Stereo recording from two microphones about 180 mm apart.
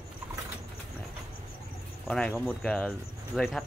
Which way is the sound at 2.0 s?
5° left (ahead or behind).